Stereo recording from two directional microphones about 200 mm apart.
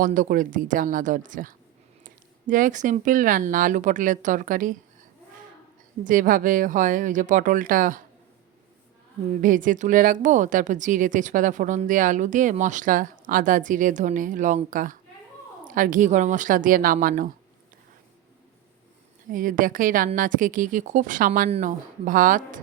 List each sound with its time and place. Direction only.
0.0 s a woman's voice: 40° right (ahead or behind)
6.0 s a woman's voice: 40° right (ahead or behind)
9.4 s a woman's voice: 40° right (ahead or behind)
19.3 s a woman's voice: 40° right (ahead or behind)